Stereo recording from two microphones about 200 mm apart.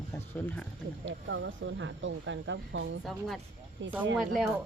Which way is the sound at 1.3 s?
70° right (ahead or behind).